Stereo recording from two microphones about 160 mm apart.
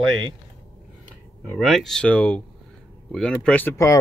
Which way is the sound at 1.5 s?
Centre (ahead or behind).